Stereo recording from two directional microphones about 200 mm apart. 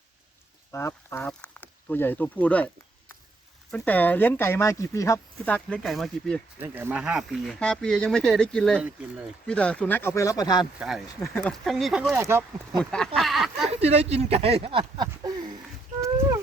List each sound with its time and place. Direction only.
0.7 s speech: 10° left (ahead or behind)
3.7 s speech: 10° left (ahead or behind)
6.6 s speech: 10° right (ahead or behind); by 10.7 s 20° left (ahead or behind)
10.8 s speech: 5° right (ahead or behind)
12.1 s speech: 10° right (ahead or behind)
12.8 s speech: 5° left (ahead or behind)
13.8 s speech: 30° right (ahead or behind)